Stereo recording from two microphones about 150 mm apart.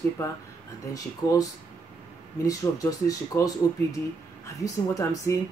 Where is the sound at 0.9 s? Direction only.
25° left (ahead or behind).